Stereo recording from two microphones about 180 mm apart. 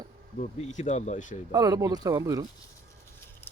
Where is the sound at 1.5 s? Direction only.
20° right (ahead or behind).